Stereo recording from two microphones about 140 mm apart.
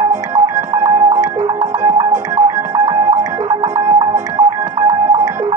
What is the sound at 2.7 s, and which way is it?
Music, 20° right (ahead or behind).